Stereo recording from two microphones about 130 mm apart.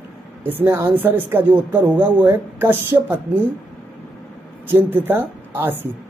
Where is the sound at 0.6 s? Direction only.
15° right (ahead or behind).